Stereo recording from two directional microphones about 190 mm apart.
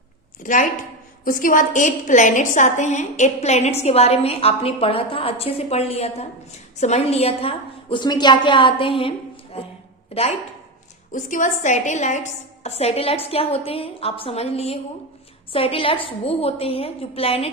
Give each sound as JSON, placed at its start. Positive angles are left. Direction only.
{"t": 0.4, "sound": "a woman's voice", "side_deg": 45}
{"t": 11.1, "sound": "a woman's voice", "side_deg": 40}